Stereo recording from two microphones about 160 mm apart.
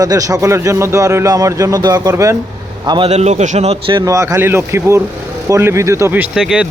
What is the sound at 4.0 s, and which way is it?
A man's voice, 20° right (ahead or behind).